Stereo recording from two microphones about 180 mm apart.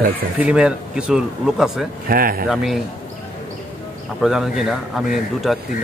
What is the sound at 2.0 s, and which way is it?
Speech, 55° right (ahead or behind).